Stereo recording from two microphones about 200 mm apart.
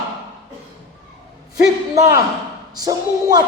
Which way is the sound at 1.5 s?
15° right (ahead or behind).